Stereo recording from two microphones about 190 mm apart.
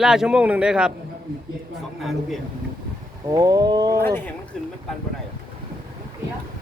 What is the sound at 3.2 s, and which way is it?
Speech, 20° right (ahead or behind).